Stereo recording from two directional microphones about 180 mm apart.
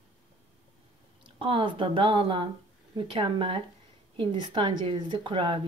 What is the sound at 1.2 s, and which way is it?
Speech, 30° right (ahead or behind).